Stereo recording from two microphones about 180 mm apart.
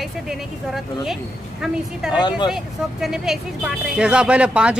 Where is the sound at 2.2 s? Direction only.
25° left (ahead or behind).